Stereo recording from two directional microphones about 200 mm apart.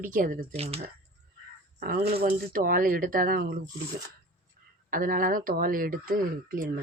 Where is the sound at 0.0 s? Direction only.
45° right (ahead or behind).